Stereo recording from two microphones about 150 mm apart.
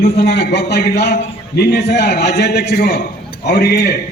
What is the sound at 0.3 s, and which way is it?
A man's voice, 90° left.